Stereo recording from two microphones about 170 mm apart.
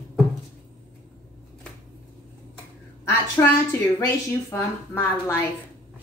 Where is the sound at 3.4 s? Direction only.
15° left (ahead or behind).